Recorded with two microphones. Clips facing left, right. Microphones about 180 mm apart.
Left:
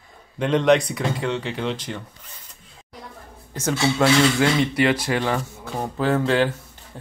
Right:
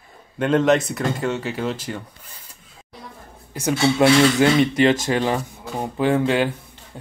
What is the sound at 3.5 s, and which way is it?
Speech, 15° right (ahead or behind).